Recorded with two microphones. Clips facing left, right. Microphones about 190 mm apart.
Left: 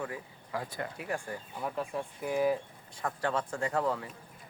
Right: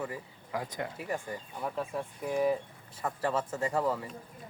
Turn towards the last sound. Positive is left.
turn(degrees=-5)  # may be behind; listen again after turning